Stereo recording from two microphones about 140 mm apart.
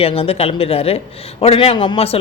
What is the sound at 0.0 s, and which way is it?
Speech, 45° left (ahead or behind).